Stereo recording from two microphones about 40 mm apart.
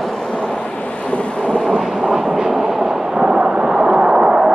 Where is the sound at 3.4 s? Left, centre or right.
Right.